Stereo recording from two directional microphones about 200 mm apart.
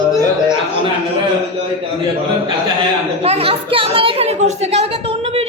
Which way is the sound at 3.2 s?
30° right (ahead or behind).